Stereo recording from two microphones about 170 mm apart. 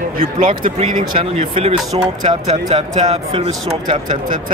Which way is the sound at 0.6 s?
45° right (ahead or behind).